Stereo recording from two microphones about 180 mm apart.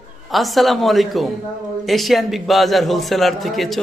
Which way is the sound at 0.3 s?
Centre (ahead or behind).